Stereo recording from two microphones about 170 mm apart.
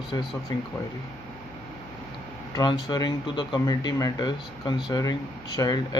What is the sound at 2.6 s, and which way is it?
Speech, 25° left (ahead or behind).